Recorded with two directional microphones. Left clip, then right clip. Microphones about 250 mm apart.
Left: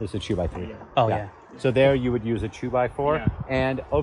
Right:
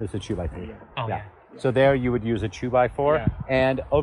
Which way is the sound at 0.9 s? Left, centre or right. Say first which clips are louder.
Left 8 dB; centre.